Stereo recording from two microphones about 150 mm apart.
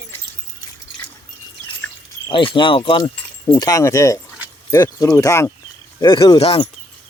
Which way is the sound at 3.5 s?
25° left (ahead or behind).